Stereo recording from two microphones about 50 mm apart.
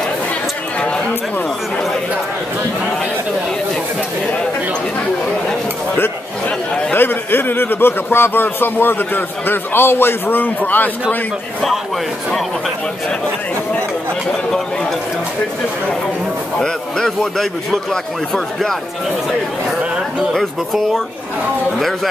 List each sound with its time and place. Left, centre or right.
6.9 s a man's voice: left
16.5 s speech: centre
17.2 s a man's voice: centre
20.3 s speech: centre